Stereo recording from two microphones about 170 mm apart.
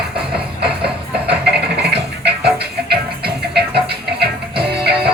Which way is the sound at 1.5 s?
75° right (ahead or behind).